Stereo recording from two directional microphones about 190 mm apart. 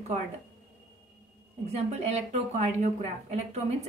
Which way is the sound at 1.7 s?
35° right (ahead or behind).